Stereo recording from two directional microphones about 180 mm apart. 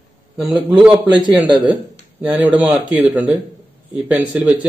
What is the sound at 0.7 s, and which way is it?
Speech, 5° right (ahead or behind).